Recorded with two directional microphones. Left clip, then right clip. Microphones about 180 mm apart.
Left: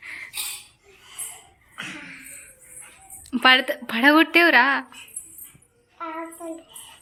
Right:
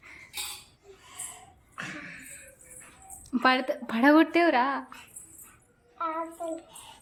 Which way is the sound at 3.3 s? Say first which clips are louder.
Left 7 dB; 5° right (ahead or behind).